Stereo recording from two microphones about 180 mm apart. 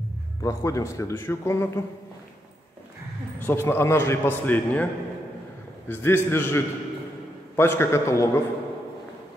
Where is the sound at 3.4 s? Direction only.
15° left (ahead or behind).